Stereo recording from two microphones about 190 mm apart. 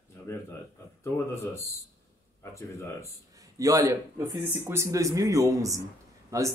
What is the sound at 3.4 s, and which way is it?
Speech, 20° right (ahead or behind).